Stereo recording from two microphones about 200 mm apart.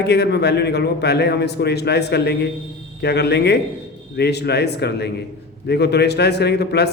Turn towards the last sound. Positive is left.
turn(degrees=55)  # may be behind; listen again after turning